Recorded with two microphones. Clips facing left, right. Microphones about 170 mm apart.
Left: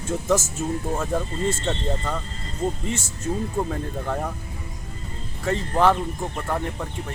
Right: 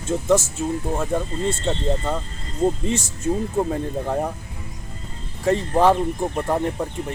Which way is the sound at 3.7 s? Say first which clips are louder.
Right 4 dB; 25° right (ahead or behind).